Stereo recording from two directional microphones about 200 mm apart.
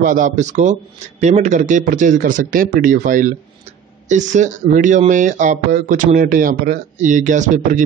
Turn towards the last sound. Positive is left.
turn(degrees=-40)  # may be behind; listen again after turning